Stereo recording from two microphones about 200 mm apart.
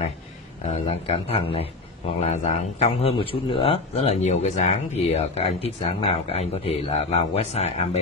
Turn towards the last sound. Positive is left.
turn(degrees=30)  # may be behind; listen again after turning